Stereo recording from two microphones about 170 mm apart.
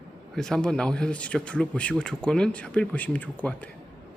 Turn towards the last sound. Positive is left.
turn(degrees=10)  # may be behind; listen again after turning